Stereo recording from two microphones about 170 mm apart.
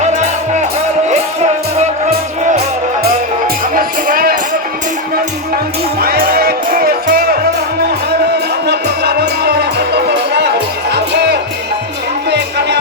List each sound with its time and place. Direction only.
0.0 s music: 40° right (ahead or behind)
3.0 s music: 55° right (ahead or behind)
6.0 s music: 60° right (ahead or behind)
8.6 s music: 75° right (ahead or behind)